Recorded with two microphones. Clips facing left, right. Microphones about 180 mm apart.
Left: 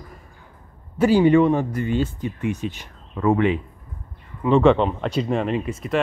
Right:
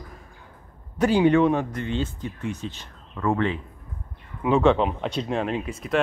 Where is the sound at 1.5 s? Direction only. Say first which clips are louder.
Left 4 dB; 10° left (ahead or behind).